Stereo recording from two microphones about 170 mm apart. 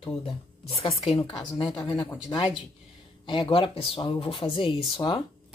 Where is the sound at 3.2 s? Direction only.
30° left (ahead or behind).